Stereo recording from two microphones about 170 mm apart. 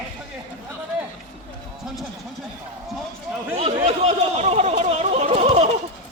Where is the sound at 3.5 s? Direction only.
35° right (ahead or behind).